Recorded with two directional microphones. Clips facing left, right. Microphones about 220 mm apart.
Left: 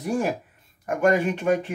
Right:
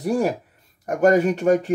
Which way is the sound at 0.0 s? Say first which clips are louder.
Right 4 dB; 35° right (ahead or behind).